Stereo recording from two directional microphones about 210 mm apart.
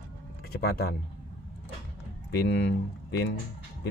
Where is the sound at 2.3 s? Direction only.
55° left (ahead or behind).